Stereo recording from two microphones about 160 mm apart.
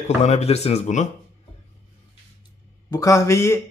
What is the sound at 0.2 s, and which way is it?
Speech, 45° left (ahead or behind).